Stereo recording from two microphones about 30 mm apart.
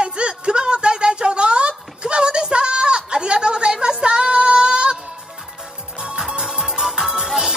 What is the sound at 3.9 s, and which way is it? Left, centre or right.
Female singing, right.